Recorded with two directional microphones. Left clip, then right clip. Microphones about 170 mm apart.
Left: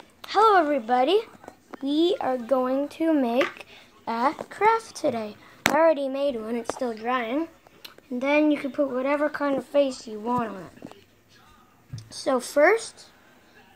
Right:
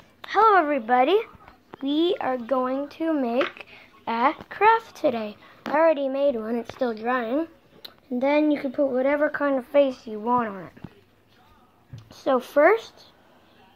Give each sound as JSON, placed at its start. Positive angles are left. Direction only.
{"t": 0.2, "sound": "speech", "side_deg": 5}
{"t": 3.3, "sound": "a woman's voice", "side_deg": 15}
{"t": 11.9, "sound": "a sound", "side_deg": -35}
{"t": 12.5, "sound": "a woman's voice", "side_deg": -10}